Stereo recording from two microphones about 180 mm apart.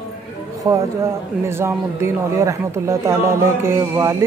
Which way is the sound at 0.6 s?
15° right (ahead or behind).